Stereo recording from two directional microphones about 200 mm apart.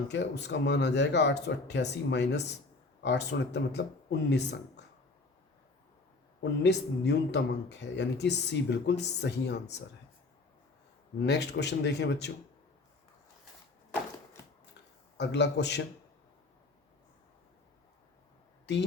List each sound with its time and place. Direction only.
0.1 s a man's voice: 60° left (ahead or behind)
6.4 s a man's voice: 60° left (ahead or behind)
11.2 s a man's voice: 60° left (ahead or behind)
15.2 s a man's voice: 60° left (ahead or behind)